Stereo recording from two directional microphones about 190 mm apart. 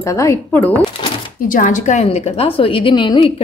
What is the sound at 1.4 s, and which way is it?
A woman's voice, 45° left (ahead or behind).